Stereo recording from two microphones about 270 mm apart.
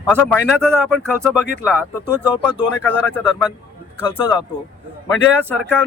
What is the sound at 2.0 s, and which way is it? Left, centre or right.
Speech, centre.